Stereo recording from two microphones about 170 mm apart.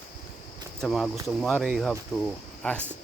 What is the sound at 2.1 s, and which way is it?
Speech, 15° left (ahead or behind).